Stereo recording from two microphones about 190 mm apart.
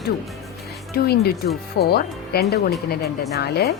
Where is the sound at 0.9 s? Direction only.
55° left (ahead or behind).